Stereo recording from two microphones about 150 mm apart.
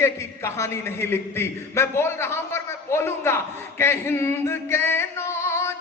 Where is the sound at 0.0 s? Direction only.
20° left (ahead or behind).